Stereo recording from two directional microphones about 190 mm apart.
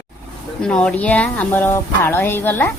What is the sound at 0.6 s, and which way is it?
Speech, 5° left (ahead or behind).